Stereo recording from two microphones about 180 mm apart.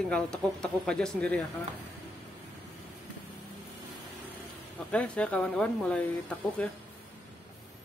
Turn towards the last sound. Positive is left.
turn(degrees=5)  # may be behind; listen again after turning